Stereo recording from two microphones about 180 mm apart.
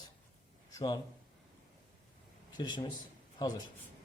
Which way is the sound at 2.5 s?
25° left (ahead or behind).